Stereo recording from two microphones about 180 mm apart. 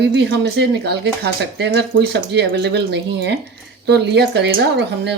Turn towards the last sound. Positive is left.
turn(degrees=-70)  # may be behind; listen again after turning